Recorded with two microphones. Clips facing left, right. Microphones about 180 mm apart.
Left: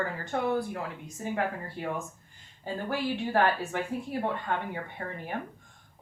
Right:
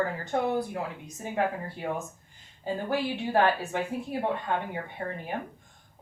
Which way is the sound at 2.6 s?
15° right (ahead or behind).